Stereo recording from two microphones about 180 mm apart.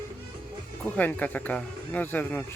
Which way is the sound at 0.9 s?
10° left (ahead or behind).